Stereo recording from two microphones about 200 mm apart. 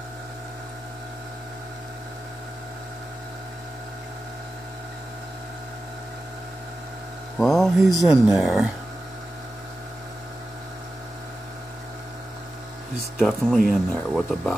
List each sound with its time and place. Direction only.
7.3 s speech: centre (ahead or behind)
13.2 s speech: centre (ahead or behind)